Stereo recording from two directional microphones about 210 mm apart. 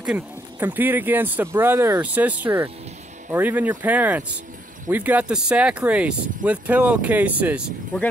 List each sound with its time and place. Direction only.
0.0 s speech: 10° right (ahead or behind)